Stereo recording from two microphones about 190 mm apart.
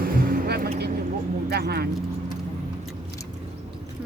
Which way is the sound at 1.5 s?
60° right (ahead or behind).